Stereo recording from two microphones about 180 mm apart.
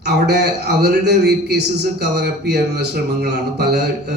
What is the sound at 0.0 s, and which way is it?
A man's voice, 65° right (ahead or behind).